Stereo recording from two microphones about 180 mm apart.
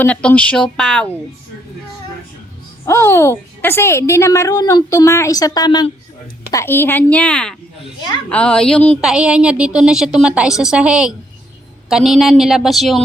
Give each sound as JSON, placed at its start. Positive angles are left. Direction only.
{"t": 0.0, "sound": "a woman's voice", "side_deg": 5}
{"t": 2.8, "sound": "a woman's voice", "side_deg": 15}